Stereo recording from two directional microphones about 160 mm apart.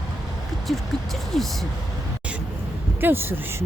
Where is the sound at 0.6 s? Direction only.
Centre (ahead or behind).